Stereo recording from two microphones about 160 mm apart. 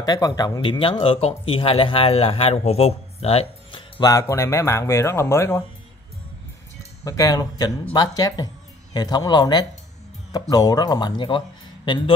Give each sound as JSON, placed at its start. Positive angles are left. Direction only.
{"t": 0.0, "sound": "speech", "side_deg": 25}
{"t": 4.0, "sound": "speech", "side_deg": 20}
{"t": 7.1, "sound": "speech", "side_deg": 20}